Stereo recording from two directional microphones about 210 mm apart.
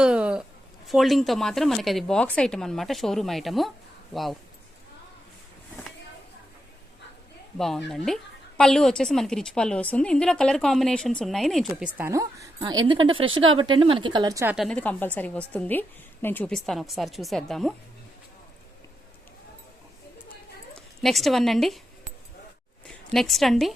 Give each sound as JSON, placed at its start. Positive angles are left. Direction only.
{"t": 0.0, "sound": "a sound", "side_deg": -5}
{"t": 0.9, "sound": "a woman's voice", "side_deg": 0}
{"t": 7.6, "sound": "a woman's voice", "side_deg": 0}
{"t": 14.5, "sound": "a woman's voice", "side_deg": 0}
{"t": 20.7, "sound": "speech", "side_deg": 0}
{"t": 22.9, "sound": "a woman's voice", "side_deg": 0}